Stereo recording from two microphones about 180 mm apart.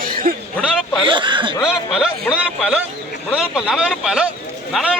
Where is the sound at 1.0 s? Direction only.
25° right (ahead or behind).